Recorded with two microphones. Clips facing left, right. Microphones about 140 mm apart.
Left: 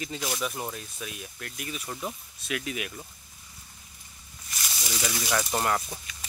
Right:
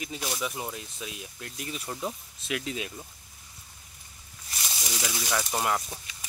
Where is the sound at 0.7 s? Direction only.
25° right (ahead or behind).